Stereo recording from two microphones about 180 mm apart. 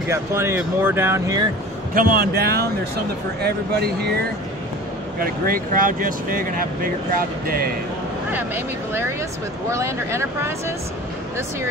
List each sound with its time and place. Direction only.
0.1 s speech: 15° right (ahead or behind)
2.0 s speech: 55° right (ahead or behind)
5.2 s speech: 55° right (ahead or behind)
8.3 s speech: 10° right (ahead or behind)